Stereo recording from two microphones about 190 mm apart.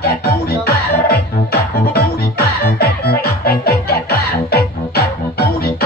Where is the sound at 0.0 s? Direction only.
55° left (ahead or behind).